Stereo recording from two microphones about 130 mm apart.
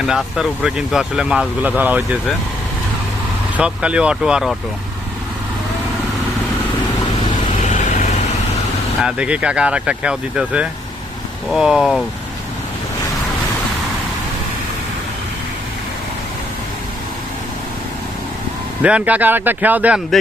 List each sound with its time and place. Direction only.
0.0 s speech: 5° right (ahead or behind)
3.6 s speech: 10° right (ahead or behind)
7.6 s vehicle: 70° left (ahead or behind)
9.0 s speech: 5° right (ahead or behind)
18.8 s speech: 10° right (ahead or behind)